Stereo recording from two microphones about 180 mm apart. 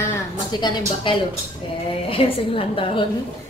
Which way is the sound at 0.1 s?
25° left (ahead or behind).